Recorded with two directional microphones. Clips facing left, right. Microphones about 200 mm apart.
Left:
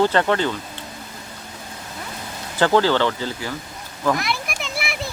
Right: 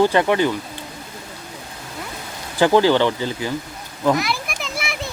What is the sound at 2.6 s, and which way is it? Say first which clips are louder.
Speech: right 3 dB; 15° right (ahead or behind).